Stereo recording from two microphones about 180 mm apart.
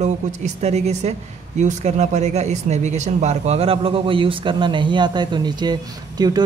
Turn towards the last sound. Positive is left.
turn(degrees=-25)  # may be behind; listen again after turning